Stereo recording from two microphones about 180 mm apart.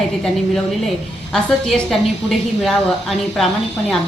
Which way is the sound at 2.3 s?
Centre (ahead or behind).